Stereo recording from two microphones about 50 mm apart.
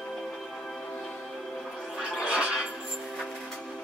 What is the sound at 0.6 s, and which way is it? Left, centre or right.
Music, centre.